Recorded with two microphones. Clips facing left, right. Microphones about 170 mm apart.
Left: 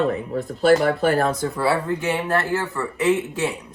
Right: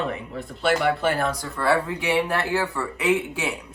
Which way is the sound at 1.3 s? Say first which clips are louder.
Left 8 dB; 25° left (ahead or behind).